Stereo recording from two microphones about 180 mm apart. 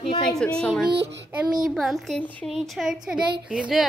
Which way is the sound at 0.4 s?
5° left (ahead or behind).